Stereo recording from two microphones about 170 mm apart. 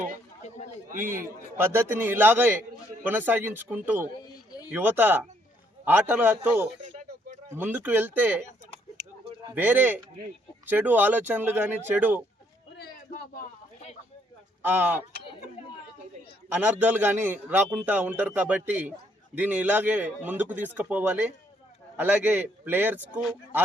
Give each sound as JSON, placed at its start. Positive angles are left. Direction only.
{"t": 0.4, "sound": "a sound", "side_deg": 40}
{"t": 0.9, "sound": "a man's voice", "side_deg": -50}
{"t": 1.5, "sound": "a man's voice", "side_deg": -15}
{"t": 6.9, "sound": "a sound", "side_deg": -45}
{"t": 7.5, "sound": "a man's voice", "side_deg": -10}
{"t": 9.6, "sound": "a man's voice", "side_deg": -10}
{"t": 12.7, "sound": "a sound", "side_deg": 65}
{"t": 14.6, "sound": "speech", "side_deg": -10}
{"t": 16.6, "sound": "a man's voice", "side_deg": -10}